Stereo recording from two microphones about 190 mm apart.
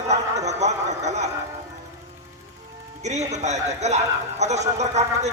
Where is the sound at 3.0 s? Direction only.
35° right (ahead or behind).